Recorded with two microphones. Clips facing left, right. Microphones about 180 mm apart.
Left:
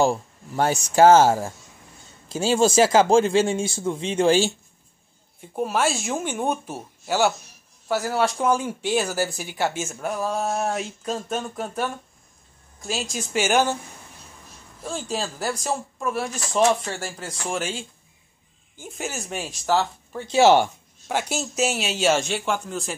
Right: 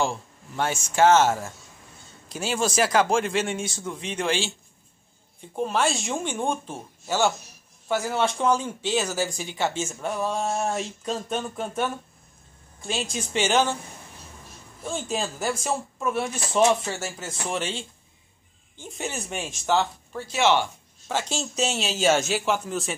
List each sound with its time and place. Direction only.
0.0 s speech: 40° left (ahead or behind)
5.6 s speech: 5° left (ahead or behind)
14.9 s speech: centre (ahead or behind)
20.3 s speech: 40° left (ahead or behind)
21.1 s speech: 10° left (ahead or behind)